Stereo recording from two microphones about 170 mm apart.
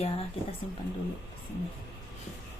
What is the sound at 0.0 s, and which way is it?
Speech, 35° left (ahead or behind).